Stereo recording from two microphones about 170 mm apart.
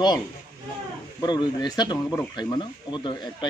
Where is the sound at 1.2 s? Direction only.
25° left (ahead or behind).